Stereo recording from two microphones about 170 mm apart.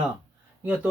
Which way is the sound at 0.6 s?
10° right (ahead or behind).